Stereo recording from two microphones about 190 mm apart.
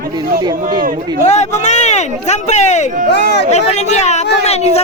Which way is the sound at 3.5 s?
35° left (ahead or behind).